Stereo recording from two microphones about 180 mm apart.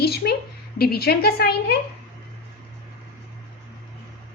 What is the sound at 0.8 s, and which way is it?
Speech, 60° left (ahead or behind).